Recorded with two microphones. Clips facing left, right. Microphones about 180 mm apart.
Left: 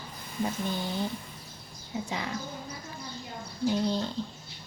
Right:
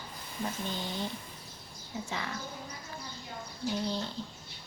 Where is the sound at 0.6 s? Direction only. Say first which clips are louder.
Left 4 dB; 10° left (ahead or behind).